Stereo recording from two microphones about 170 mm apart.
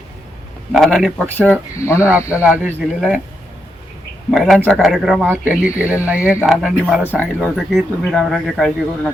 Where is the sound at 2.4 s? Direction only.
5° right (ahead or behind).